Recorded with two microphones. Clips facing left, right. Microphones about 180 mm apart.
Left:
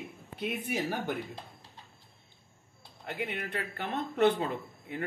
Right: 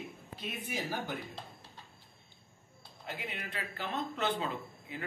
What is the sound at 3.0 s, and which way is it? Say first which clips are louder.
A man's voice: left 6 dB; 60° left (ahead or behind).